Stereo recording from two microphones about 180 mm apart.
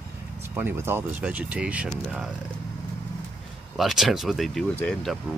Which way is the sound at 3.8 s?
Centre (ahead or behind).